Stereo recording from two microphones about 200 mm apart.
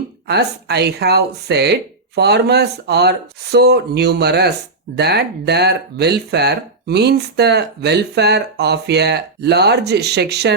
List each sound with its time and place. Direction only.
0.3 s speech: 55° right (ahead or behind)